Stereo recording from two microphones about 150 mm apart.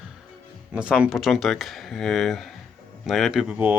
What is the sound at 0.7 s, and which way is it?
Speech, 5° right (ahead or behind).